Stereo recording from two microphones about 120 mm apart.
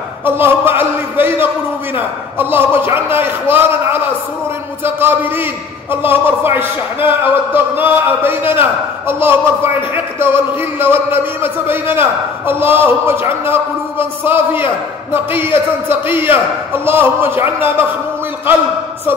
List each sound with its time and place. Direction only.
0.2 s a man's voice: 20° right (ahead or behind)